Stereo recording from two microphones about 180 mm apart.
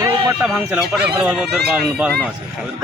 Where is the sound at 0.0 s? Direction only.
20° right (ahead or behind).